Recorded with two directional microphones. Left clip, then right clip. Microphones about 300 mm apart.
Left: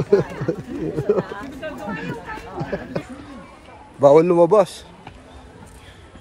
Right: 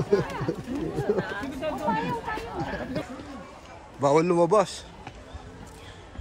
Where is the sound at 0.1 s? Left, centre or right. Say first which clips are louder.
Left 7 dB; centre.